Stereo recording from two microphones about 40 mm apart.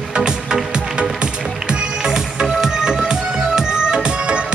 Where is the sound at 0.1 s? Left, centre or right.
Right.